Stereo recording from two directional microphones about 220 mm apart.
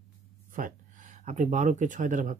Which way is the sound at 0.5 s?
35° right (ahead or behind).